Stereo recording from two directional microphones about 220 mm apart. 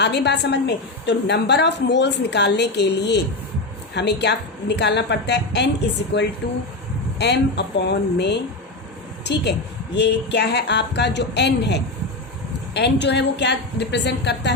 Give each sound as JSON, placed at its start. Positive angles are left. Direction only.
{"t": 0.0, "sound": "a woman's voice", "side_deg": 50}